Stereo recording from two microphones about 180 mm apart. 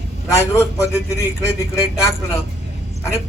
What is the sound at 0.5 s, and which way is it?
Speech, 15° left (ahead or behind).